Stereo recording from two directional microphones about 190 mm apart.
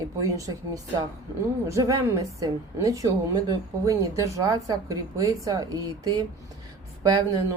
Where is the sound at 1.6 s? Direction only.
15° right (ahead or behind).